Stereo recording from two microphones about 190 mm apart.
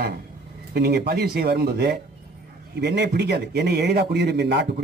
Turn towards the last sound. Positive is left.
turn(degrees=-65)  # may be behind; listen again after turning